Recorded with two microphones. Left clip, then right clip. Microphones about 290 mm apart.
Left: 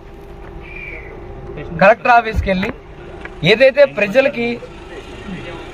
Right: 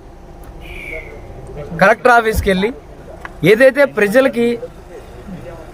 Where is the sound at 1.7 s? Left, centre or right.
Centre.